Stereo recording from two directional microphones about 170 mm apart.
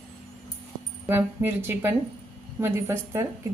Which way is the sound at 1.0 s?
15° right (ahead or behind).